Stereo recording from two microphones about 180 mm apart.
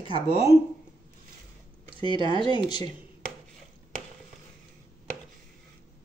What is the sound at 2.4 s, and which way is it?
Speech, 25° left (ahead or behind).